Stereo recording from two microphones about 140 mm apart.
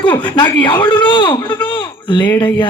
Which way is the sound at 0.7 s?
35° left (ahead or behind).